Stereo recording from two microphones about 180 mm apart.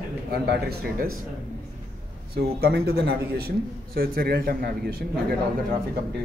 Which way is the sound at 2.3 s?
65° right (ahead or behind).